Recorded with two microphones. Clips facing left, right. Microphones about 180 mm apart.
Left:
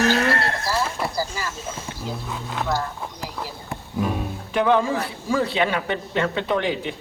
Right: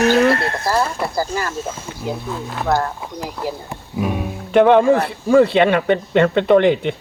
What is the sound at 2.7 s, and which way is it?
Speech, 55° right (ahead or behind).